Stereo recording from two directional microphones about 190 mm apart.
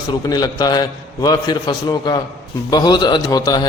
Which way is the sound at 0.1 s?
20° left (ahead or behind).